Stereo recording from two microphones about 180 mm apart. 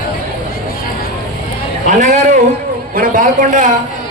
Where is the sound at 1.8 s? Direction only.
40° right (ahead or behind).